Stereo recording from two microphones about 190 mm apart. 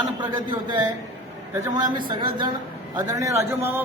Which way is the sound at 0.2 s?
20° right (ahead or behind).